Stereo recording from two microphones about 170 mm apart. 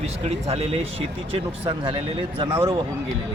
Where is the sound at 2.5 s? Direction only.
15° right (ahead or behind).